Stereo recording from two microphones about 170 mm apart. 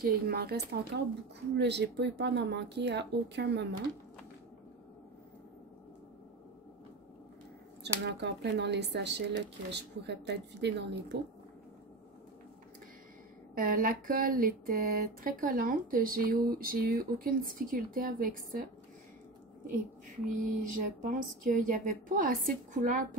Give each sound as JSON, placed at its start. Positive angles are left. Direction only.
{"t": 0.0, "sound": "speech", "side_deg": -65}
{"t": 1.6, "sound": "speech", "side_deg": -90}
{"t": 7.8, "sound": "speech", "side_deg": -85}
{"t": 13.6, "sound": "speech", "side_deg": -55}
{"t": 20.2, "sound": "speech", "side_deg": -50}